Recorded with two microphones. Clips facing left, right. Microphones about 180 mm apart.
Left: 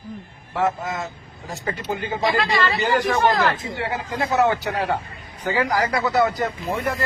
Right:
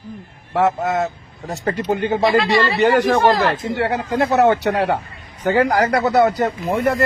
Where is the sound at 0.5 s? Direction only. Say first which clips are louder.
Right 6 dB; 65° right (ahead or behind).